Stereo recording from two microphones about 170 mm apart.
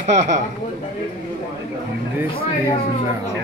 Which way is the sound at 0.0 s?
45° right (ahead or behind).